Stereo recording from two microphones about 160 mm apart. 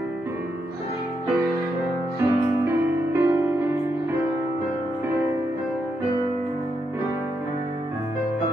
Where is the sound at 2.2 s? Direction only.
15° right (ahead or behind).